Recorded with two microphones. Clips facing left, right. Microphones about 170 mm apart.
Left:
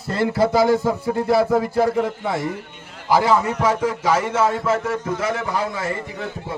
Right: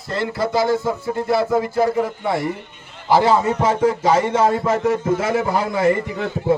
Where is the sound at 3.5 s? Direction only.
35° right (ahead or behind).